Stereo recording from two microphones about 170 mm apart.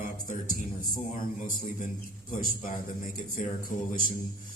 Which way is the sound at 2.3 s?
50° left (ahead or behind).